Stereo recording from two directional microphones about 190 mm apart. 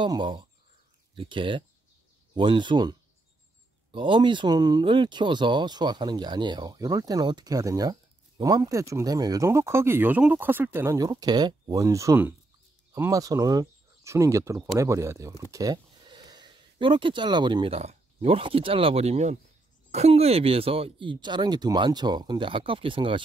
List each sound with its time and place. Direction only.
0.0 s speech: 25° right (ahead or behind)